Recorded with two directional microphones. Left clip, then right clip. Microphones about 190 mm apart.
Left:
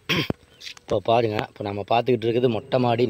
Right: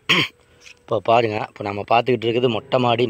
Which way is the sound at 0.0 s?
Centre (ahead or behind).